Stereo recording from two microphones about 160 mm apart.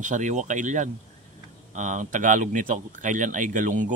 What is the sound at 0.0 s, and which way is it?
Speech, 50° right (ahead or behind).